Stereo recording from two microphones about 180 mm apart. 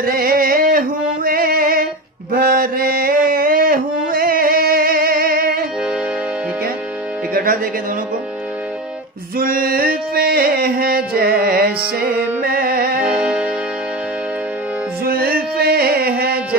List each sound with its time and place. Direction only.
0.0 s music: 55° right (ahead or behind)
2.3 s mantra: 55° right (ahead or behind)
7.3 s music: 50° right (ahead or behind)
9.4 s music: 55° right (ahead or behind)
13.0 s music: 5° right (ahead or behind)
15.0 s music: 55° right (ahead or behind)